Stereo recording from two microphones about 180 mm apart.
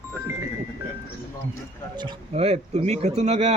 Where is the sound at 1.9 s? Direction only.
30° right (ahead or behind).